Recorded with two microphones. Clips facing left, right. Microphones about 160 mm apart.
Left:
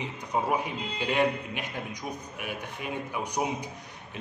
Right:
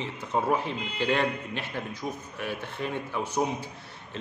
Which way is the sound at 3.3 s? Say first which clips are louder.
Right 2 dB; 15° left (ahead or behind).